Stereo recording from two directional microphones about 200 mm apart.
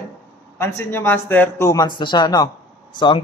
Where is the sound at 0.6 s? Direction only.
10° left (ahead or behind).